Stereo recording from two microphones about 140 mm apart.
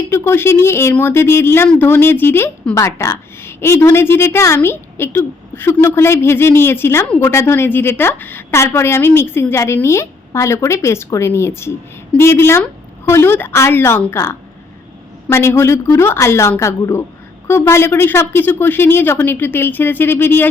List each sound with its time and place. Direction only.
0.1 s speech: 15° left (ahead or behind)